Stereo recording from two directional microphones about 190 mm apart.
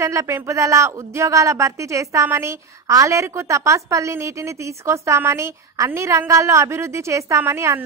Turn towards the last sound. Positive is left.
turn(degrees=-15)  # may be behind; listen again after turning